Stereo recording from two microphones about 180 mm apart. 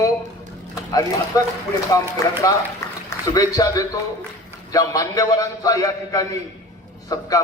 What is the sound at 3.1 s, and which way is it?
A man's voice, 20° left (ahead or behind).